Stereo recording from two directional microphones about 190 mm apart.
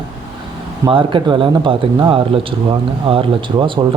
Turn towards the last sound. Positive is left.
turn(degrees=-25)  # may be behind; listen again after turning